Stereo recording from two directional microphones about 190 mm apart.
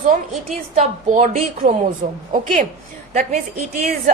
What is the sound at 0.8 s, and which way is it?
Speech, 40° right (ahead or behind).